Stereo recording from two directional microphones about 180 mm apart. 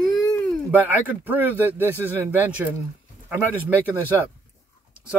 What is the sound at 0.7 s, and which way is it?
Speech, 10° right (ahead or behind).